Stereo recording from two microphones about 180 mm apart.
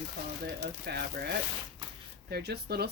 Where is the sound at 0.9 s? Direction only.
65° right (ahead or behind).